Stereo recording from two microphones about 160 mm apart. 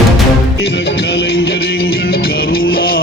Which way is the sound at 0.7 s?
90° left.